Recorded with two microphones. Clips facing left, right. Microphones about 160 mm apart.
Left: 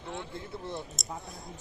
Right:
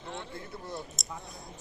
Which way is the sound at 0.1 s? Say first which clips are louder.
Left 2 dB; 20° left (ahead or behind).